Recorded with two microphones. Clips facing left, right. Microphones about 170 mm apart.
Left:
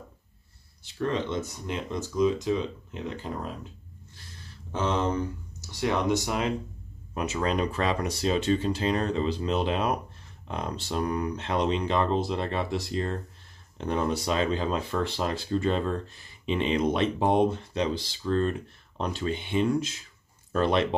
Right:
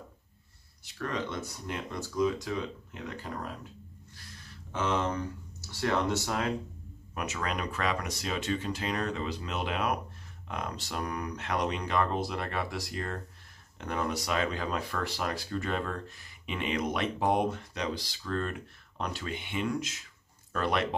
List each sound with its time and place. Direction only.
0.8 s speech: 25° left (ahead or behind)
4.1 s a sound: 30° left (ahead or behind)
5.6 s speech: 15° left (ahead or behind)
7.2 s speech: 30° left (ahead or behind)